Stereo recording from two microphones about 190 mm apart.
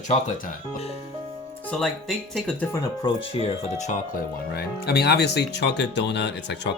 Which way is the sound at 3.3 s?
35° left (ahead or behind).